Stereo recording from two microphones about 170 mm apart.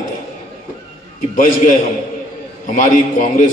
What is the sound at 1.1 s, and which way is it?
A man's voice, 50° left (ahead or behind).